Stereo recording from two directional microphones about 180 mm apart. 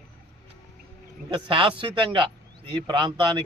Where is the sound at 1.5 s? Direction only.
30° right (ahead or behind).